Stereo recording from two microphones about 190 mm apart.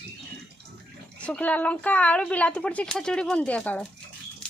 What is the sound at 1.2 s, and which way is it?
Speech, 5° left (ahead or behind).